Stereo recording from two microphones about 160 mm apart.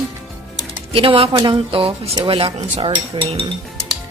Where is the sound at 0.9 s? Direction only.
35° right (ahead or behind).